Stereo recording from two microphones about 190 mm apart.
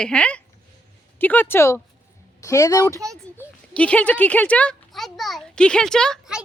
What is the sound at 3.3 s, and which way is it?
Speech, 5° left (ahead or behind).